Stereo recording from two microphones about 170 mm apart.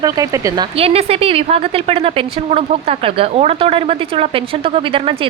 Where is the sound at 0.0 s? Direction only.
20° right (ahead or behind).